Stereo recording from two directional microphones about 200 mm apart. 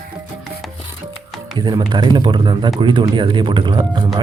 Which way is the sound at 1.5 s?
20° right (ahead or behind).